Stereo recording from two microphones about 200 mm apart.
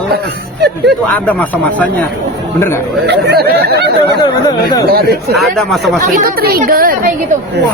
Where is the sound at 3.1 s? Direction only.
55° right (ahead or behind).